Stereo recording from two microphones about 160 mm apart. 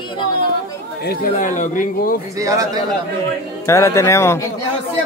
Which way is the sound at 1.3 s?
50° left (ahead or behind).